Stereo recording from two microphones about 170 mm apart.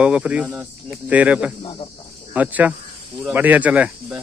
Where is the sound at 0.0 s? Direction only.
5° right (ahead or behind).